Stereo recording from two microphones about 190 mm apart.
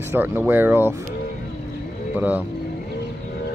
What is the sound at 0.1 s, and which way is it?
Speech, 10° right (ahead or behind).